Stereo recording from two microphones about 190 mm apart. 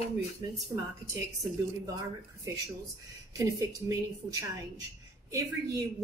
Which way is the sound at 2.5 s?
15° right (ahead or behind).